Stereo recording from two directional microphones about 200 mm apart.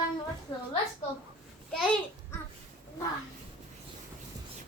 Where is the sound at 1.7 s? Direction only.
5° left (ahead or behind).